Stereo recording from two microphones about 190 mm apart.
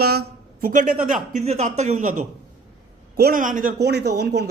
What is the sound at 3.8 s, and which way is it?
Speech, 60° right (ahead or behind).